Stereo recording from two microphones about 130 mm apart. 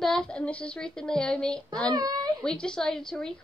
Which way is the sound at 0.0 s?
5° left (ahead or behind).